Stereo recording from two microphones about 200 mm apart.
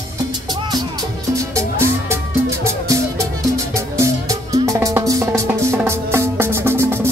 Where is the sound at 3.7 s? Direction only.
15° right (ahead or behind).